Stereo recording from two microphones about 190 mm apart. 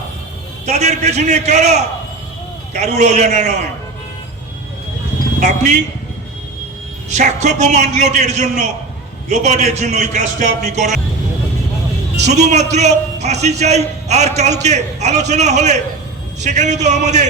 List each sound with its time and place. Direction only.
0.6 s a man's voice: 35° right (ahead or behind)
5.4 s a man's voice: 40° right (ahead or behind)
7.1 s a man's voice: 40° right (ahead or behind)
12.2 s a man's voice: 35° right (ahead or behind)